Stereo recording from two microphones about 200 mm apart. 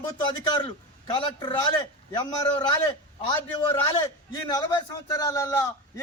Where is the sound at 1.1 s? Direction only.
25° left (ahead or behind).